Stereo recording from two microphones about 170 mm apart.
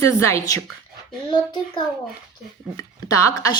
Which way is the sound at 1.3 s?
30° left (ahead or behind).